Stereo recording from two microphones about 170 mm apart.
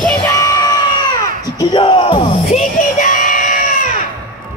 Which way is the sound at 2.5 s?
50° left (ahead or behind).